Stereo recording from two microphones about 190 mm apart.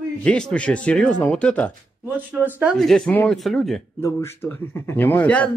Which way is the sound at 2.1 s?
10° right (ahead or behind).